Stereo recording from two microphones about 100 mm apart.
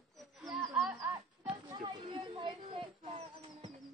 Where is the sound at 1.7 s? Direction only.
50° right (ahead or behind).